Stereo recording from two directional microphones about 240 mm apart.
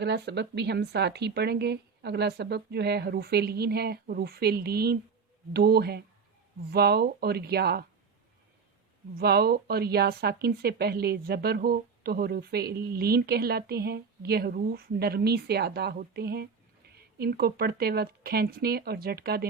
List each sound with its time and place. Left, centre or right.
0.0 s speech: right
9.1 s speech: right